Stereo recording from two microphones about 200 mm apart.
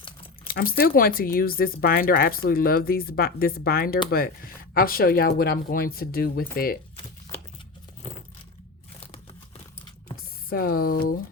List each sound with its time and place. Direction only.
0.4 s speech: 50° left (ahead or behind)
6.9 s crumpling: 30° left (ahead or behind)
10.5 s speech: 50° left (ahead or behind)